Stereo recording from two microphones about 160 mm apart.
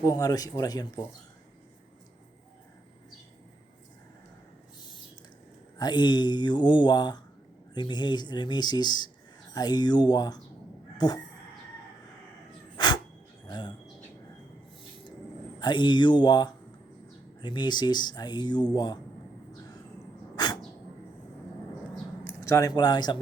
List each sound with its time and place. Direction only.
0.0 s speech: 25° left (ahead or behind)
5.7 s speech: 25° left (ahead or behind)
10.9 s a sound: 25° left (ahead or behind)
12.7 s cat: 25° left (ahead or behind)
13.5 s speech: 30° left (ahead or behind)
15.6 s speech: 30° left (ahead or behind)
20.3 s a sound: 25° left (ahead or behind)
22.4 s speech: 20° left (ahead or behind)